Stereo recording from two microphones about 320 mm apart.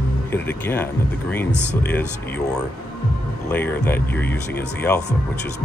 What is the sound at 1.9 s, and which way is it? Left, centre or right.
Speech, centre.